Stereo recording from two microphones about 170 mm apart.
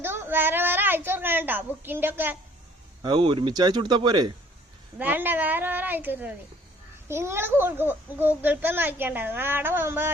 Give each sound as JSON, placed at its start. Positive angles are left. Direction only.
{"t": 0.0, "sound": "a woman's voice", "side_deg": -15}
{"t": 3.0, "sound": "speech", "side_deg": -30}
{"t": 4.9, "sound": "a child's voice", "side_deg": -10}